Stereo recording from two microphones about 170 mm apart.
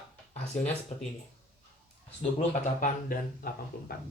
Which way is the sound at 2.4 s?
55° left (ahead or behind).